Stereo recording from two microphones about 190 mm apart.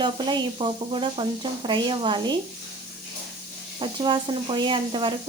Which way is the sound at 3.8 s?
25° right (ahead or behind).